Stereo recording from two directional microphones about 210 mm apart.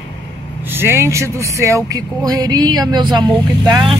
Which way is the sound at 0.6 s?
10° right (ahead or behind).